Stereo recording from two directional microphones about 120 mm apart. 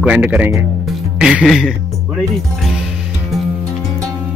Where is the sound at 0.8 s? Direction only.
5° right (ahead or behind).